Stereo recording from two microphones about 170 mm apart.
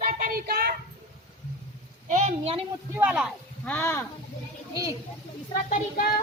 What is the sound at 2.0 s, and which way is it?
Speech, 45° right (ahead or behind).